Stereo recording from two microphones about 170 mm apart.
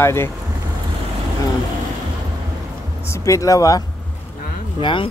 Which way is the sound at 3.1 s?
20° left (ahead or behind).